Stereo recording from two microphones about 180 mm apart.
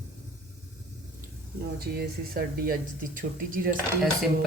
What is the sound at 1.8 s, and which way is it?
A woman's voice, 55° right (ahead or behind).